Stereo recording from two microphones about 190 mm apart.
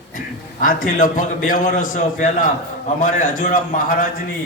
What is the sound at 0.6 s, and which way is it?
A man's voice, 45° left (ahead or behind).